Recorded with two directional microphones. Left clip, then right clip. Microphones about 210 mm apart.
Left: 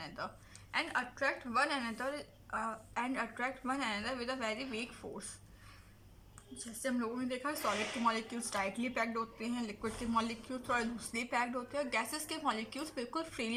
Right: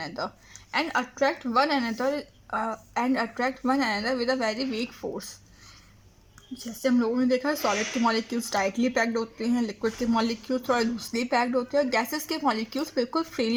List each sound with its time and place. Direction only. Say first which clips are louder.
0.7 s speech: right 9 dB; 45° right (ahead or behind)
6.8 s speech: right 13 dB; 45° right (ahead or behind)